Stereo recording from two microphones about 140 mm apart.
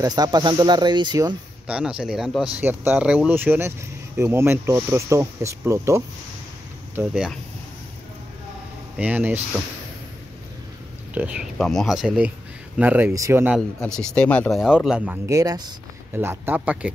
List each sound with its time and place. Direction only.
0.0 s speech: 30° right (ahead or behind)
1.7 s speech: 5° right (ahead or behind)
2.6 s speech: 15° right (ahead or behind)
8.9 s speech: 10° right (ahead or behind)
11.1 s speech: 10° right (ahead or behind)
12.7 s speech: 10° right (ahead or behind)
13.6 s speech: 5° left (ahead or behind)
15.2 s speech: 25° right (ahead or behind)